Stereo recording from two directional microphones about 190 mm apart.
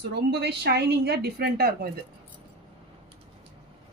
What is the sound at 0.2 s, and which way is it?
A woman's voice, 60° right (ahead or behind).